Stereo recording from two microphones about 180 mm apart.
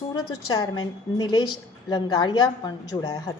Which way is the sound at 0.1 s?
25° left (ahead or behind).